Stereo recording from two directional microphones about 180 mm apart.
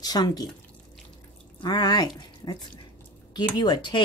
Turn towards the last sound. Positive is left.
turn(degrees=25)  # may be behind; listen again after turning